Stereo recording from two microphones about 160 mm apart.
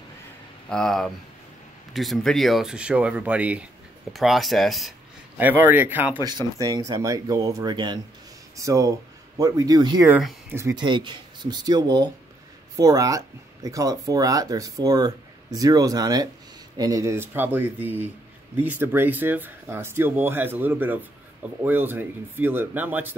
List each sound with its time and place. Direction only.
0.7 s speech: 5° left (ahead or behind)
5.4 s speech: 10° right (ahead or behind)
6.2 s speech: 20° right (ahead or behind)